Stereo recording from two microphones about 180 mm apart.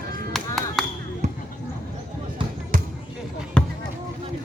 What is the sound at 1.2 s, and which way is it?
Basketball bounce, 40° right (ahead or behind).